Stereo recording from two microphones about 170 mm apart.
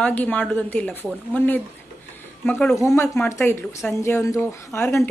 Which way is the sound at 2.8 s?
20° left (ahead or behind).